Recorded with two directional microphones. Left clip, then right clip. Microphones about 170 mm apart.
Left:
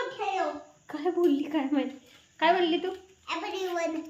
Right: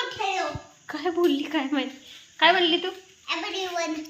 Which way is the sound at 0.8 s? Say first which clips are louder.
Right 2 dB; 10° right (ahead or behind).